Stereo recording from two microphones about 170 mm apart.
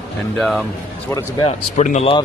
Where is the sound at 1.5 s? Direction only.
45° left (ahead or behind).